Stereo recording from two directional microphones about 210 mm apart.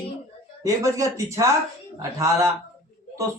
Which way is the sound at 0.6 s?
15° right (ahead or behind).